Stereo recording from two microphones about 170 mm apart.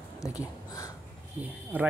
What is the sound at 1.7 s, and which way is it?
Speech, 10° right (ahead or behind).